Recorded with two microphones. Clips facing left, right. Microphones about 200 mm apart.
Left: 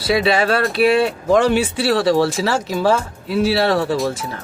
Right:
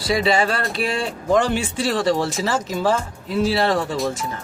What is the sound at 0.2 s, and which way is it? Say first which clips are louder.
Speech: left 3 dB; 65° left (ahead or behind).